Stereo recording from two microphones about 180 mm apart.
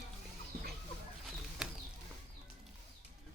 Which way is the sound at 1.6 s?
5° right (ahead or behind).